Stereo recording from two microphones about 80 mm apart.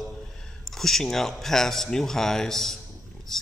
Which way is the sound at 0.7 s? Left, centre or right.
Centre.